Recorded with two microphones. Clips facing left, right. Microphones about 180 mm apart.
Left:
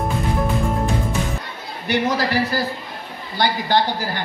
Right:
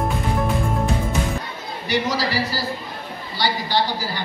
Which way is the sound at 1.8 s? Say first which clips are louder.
Left 2 dB; 55° left (ahead or behind).